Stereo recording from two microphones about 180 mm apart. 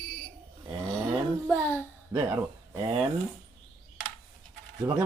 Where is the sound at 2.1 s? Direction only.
15° right (ahead or behind).